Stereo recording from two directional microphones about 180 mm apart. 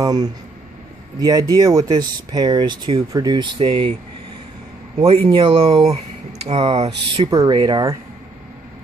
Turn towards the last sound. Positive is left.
turn(degrees=-20)  # may be behind; listen again after turning